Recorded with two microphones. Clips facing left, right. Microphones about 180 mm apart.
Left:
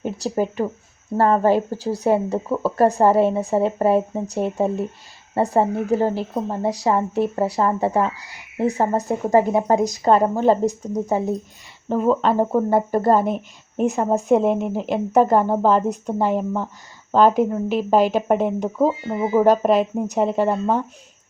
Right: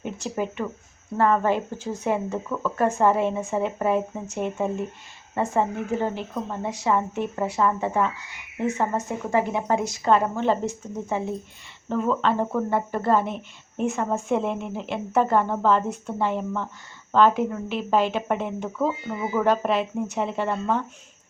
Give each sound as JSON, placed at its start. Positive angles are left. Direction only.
{"t": 0.0, "sound": "speech", "side_deg": 35}